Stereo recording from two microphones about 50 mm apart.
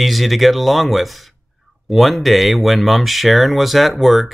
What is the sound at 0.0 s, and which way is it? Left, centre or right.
Speech, centre.